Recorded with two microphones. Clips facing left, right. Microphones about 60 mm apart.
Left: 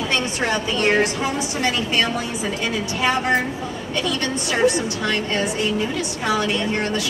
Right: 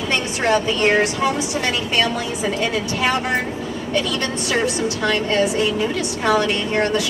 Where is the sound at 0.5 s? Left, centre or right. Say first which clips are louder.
Right 4 dB; centre.